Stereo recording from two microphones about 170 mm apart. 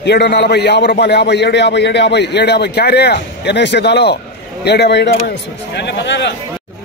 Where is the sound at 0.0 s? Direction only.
85° left.